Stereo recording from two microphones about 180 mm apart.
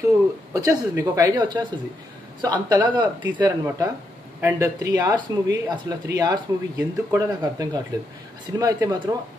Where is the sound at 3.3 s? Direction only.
10° right (ahead or behind).